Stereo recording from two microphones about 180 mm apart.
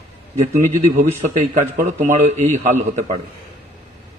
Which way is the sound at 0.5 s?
40° right (ahead or behind).